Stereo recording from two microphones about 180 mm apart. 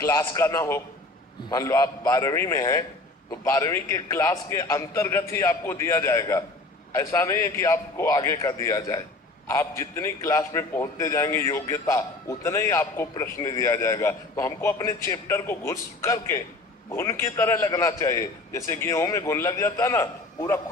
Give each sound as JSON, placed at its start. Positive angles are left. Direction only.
{"t": 0.0, "sound": "a man's voice", "side_deg": 15}